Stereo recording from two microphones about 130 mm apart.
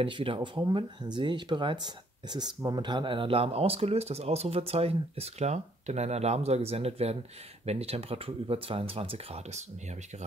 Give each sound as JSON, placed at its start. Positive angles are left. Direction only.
{"t": 0.0, "sound": "speech", "side_deg": -40}